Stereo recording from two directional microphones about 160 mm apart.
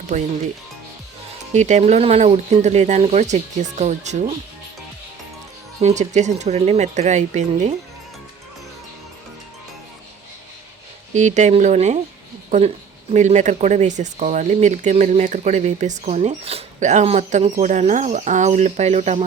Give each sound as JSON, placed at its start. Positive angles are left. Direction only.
{"t": 0.1, "sound": "speech", "side_deg": -50}
{"t": 1.5, "sound": "speech", "side_deg": -45}
{"t": 5.8, "sound": "speech", "side_deg": -45}
{"t": 11.1, "sound": "speech", "side_deg": -50}